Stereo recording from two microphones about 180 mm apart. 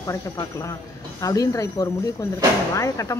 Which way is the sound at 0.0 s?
20° left (ahead or behind).